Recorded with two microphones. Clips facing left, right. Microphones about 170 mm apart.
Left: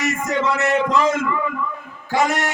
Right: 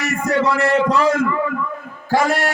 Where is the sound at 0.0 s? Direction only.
20° left (ahead or behind).